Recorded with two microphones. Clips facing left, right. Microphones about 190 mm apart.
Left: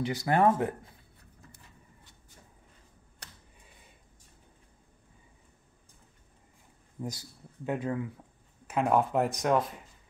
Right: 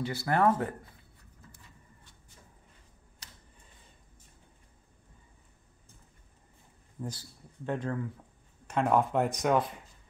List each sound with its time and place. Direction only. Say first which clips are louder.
0.0 s speech: left 2 dB; 15° left (ahead or behind)
7.0 s speech: left 2 dB; 10° left (ahead or behind)